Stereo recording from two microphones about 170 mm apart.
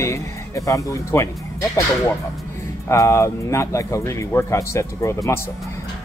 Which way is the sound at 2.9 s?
15° left (ahead or behind).